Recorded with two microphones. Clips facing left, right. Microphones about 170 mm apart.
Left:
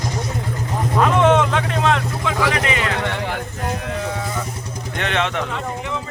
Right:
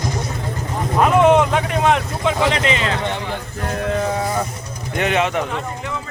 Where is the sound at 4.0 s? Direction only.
40° right (ahead or behind).